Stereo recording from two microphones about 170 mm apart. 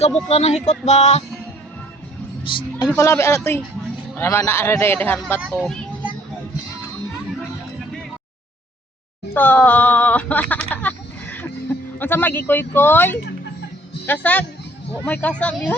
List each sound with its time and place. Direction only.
0.3 s music: 40° left (ahead or behind)
2.6 s a woman's voice: 25° left (ahead or behind); by 5.8 s 5° left (ahead or behind)
9.3 s speech: 10° left (ahead or behind)
10.5 s a sound: 10° left (ahead or behind)
11.9 s speech: 10° left (ahead or behind)